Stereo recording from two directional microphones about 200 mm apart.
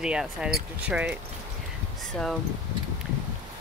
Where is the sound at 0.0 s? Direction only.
5° right (ahead or behind).